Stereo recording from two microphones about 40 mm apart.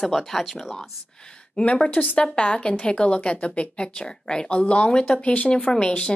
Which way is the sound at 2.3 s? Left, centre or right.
Left.